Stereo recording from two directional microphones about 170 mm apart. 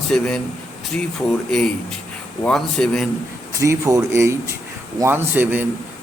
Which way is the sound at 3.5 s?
20° right (ahead or behind).